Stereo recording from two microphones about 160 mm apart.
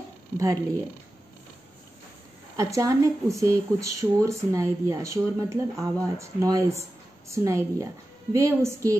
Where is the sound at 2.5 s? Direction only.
20° right (ahead or behind).